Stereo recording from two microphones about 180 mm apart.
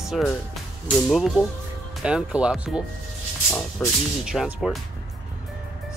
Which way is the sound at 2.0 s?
5° right (ahead or behind).